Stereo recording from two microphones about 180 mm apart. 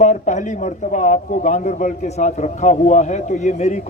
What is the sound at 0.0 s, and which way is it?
A man's voice, 40° left (ahead or behind).